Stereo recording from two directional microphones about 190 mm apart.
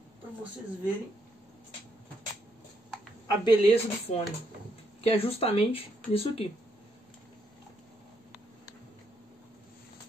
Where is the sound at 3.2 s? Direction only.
25° left (ahead or behind).